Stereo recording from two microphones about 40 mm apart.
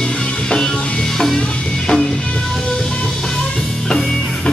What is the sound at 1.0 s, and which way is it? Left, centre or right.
Music, centre.